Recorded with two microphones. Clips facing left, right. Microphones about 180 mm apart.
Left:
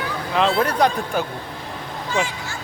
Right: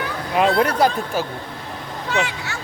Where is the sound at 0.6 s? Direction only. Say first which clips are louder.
Right 1 dB; 10° right (ahead or behind).